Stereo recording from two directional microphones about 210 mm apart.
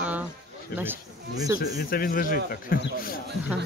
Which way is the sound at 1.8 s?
45° left (ahead or behind).